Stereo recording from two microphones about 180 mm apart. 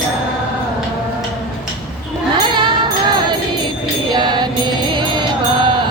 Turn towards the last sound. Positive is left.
turn(degrees=-25)  # may be behind; listen again after turning